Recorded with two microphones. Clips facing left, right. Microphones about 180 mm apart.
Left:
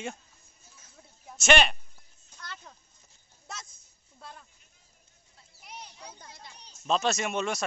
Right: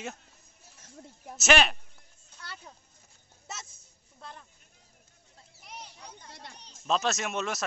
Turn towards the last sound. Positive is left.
turn(degrees=0)  # may be behind; listen again after turning